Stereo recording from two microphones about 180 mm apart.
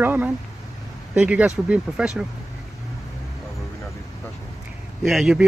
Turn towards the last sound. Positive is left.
turn(degrees=0)  # may be behind; listen again after turning